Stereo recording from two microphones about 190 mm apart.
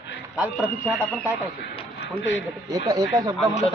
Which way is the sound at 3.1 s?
20° right (ahead or behind).